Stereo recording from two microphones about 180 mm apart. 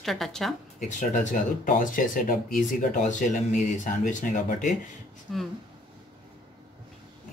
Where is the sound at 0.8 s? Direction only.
45° left (ahead or behind).